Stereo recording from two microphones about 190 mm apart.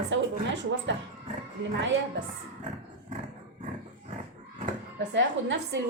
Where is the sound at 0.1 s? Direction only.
70° right (ahead or behind).